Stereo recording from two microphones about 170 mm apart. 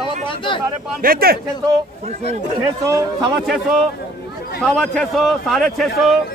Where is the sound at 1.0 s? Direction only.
60° right (ahead or behind).